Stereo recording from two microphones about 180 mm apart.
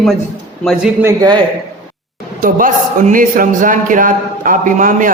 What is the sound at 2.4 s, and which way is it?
A man's voice, 50° right (ahead or behind).